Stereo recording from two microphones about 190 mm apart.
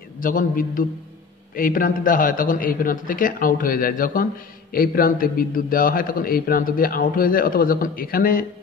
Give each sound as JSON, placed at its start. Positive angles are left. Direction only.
{"t": 0.2, "sound": "a man's voice", "side_deg": 45}